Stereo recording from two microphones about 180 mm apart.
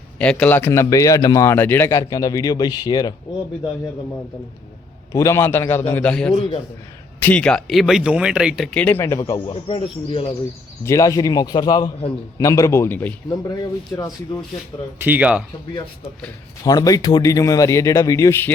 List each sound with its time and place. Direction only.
0.2 s speech: 5° left (ahead or behind)
5.1 s speech: 15° left (ahead or behind)
9.5 s speech: 30° left (ahead or behind)
10.8 s speech: 15° left (ahead or behind)
14.9 s speech: 10° right (ahead or behind)
16.6 s speech: 20° left (ahead or behind)